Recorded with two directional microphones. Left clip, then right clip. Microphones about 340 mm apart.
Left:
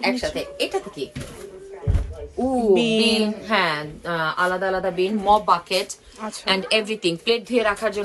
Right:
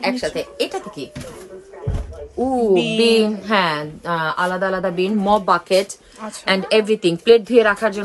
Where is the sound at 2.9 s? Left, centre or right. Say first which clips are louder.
Right 5 dB; right.